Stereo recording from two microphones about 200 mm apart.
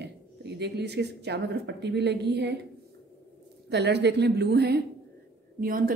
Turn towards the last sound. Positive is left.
turn(degrees=-45)  # may be behind; listen again after turning